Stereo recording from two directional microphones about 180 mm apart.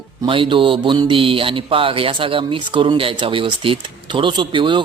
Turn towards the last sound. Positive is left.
turn(degrees=-25)  # may be behind; listen again after turning